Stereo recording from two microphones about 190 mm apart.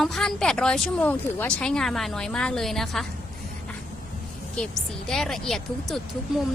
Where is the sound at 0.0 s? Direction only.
Centre (ahead or behind).